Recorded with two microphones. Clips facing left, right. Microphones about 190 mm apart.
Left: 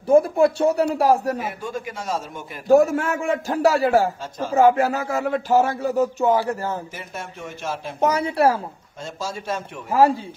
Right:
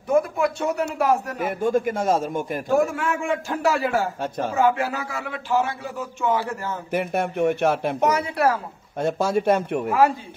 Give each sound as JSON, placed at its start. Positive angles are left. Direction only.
{"t": 0.1, "sound": "a man's voice", "side_deg": 30}
{"t": 1.4, "sound": "a man's voice", "side_deg": -50}
{"t": 2.7, "sound": "a man's voice", "side_deg": 40}
{"t": 6.9, "sound": "speech", "side_deg": -60}
{"t": 8.1, "sound": "a man's voice", "side_deg": 30}
{"t": 8.9, "sound": "speech", "side_deg": -60}